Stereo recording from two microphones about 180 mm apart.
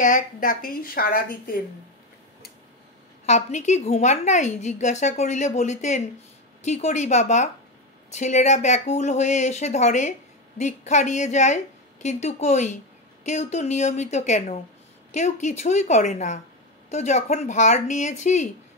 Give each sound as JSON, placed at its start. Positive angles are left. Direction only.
{"t": 0.0, "sound": "a woman's voice", "side_deg": 50}
{"t": 3.3, "sound": "a woman's voice", "side_deg": 40}